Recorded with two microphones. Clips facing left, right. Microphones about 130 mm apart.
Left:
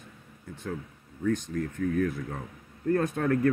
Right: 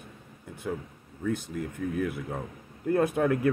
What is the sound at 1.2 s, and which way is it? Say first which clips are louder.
Speech: left 2 dB; 10° right (ahead or behind).